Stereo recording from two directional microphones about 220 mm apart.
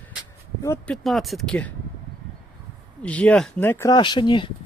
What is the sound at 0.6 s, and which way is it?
Speech, 10° left (ahead or behind).